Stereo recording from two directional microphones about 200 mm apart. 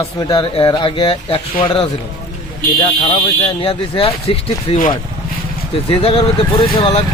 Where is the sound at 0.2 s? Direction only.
20° left (ahead or behind).